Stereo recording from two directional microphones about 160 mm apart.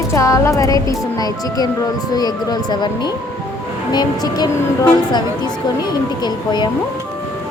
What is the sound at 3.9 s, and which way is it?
Speech, 25° left (ahead or behind).